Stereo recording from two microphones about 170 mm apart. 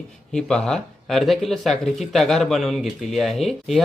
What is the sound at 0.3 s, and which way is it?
Speech, 5° left (ahead or behind).